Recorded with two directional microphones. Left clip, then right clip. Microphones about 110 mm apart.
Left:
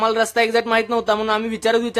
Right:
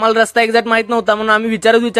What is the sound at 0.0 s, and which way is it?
Speech, 45° right (ahead or behind).